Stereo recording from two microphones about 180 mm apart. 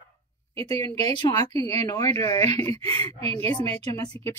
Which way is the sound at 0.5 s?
20° left (ahead or behind).